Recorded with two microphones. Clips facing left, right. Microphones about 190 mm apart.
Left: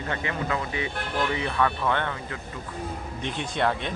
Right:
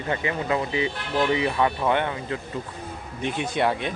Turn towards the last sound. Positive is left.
turn(degrees=-5)  # may be behind; listen again after turning